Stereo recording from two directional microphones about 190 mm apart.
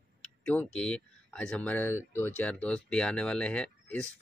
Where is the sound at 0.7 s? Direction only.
5° left (ahead or behind).